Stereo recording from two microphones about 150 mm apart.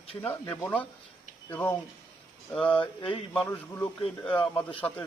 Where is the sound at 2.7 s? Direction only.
35° left (ahead or behind).